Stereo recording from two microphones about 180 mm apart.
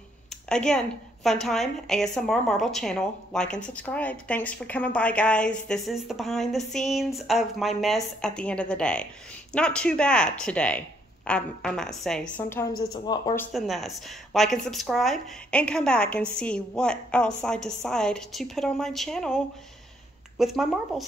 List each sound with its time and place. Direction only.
0.3 s a woman's voice: 5° left (ahead or behind)
12.9 s speech: 20° left (ahead or behind)
13.5 s a woman's voice: centre (ahead or behind)